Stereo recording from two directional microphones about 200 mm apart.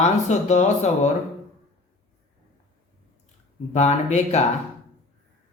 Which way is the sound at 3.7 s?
35° left (ahead or behind).